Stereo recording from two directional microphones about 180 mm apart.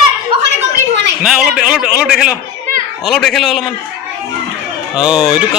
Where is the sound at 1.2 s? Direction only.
Centre (ahead or behind).